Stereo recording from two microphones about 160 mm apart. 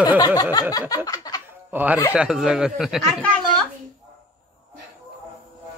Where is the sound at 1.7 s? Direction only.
10° right (ahead or behind).